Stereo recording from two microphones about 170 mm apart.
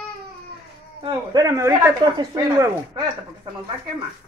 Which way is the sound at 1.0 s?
20° right (ahead or behind).